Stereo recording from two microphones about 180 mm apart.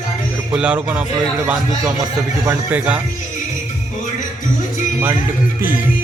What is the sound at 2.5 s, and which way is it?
Speech, 10° right (ahead or behind).